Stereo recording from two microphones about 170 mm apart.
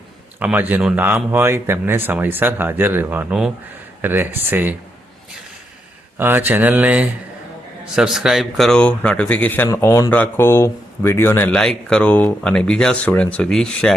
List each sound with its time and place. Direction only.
0.3 s speech: 10° right (ahead or behind)
6.1 s a man's voice: 10° right (ahead or behind); by 13.9 s 5° left (ahead or behind)